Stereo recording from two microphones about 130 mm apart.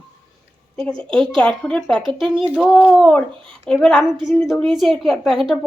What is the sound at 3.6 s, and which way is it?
A woman's voice, 5° left (ahead or behind).